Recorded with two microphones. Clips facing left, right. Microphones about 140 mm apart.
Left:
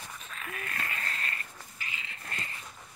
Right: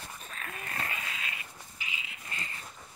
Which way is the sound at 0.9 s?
10° right (ahead or behind).